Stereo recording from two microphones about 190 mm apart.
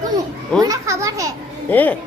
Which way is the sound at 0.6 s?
15° right (ahead or behind).